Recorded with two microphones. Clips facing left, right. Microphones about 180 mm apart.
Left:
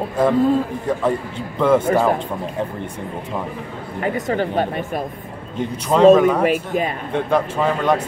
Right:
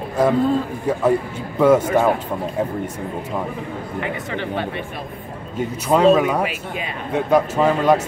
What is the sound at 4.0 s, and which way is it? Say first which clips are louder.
Speech: left 7 dB; 40° left (ahead or behind).